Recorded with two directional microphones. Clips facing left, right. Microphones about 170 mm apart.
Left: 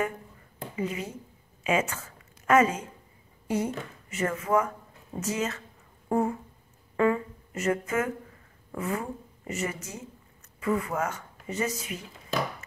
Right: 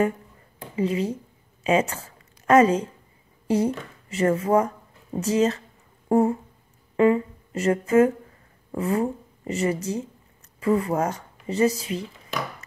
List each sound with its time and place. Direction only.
0.7 s a woman's voice: 30° right (ahead or behind)
6.0 s a sound: 35° right (ahead or behind)
7.0 s speech: 20° right (ahead or behind)